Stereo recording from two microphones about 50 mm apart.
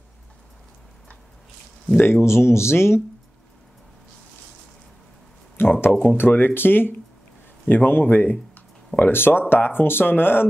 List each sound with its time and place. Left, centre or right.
2.2 s speech: left
5.6 s a sound: left
5.9 s speech: left